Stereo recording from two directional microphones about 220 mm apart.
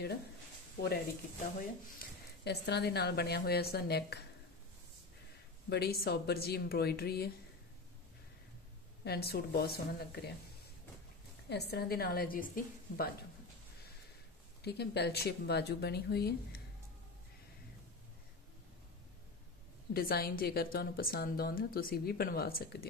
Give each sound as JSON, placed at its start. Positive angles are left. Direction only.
{"t": 2.0, "sound": "speech", "side_deg": 50}
{"t": 5.7, "sound": "speech", "side_deg": 45}
{"t": 9.0, "sound": "speech", "side_deg": 45}
{"t": 11.4, "sound": "speech", "side_deg": 50}
{"t": 14.6, "sound": "speech", "side_deg": 50}
{"t": 19.9, "sound": "speech", "side_deg": 45}